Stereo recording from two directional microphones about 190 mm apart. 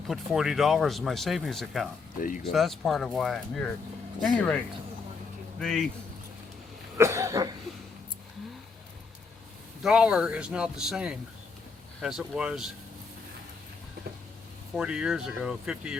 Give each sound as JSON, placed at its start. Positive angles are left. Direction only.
{"t": 0.1, "sound": "speech", "side_deg": 0}
{"t": 2.1, "sound": "speech", "side_deg": 45}
{"t": 2.4, "sound": "speech", "side_deg": 0}
{"t": 6.9, "sound": "cough", "side_deg": -15}
{"t": 9.8, "sound": "speech", "side_deg": -5}
{"t": 14.8, "sound": "speech", "side_deg": -5}